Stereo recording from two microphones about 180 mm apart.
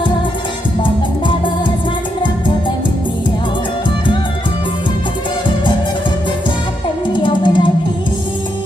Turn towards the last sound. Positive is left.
turn(degrees=25)  # may be behind; listen again after turning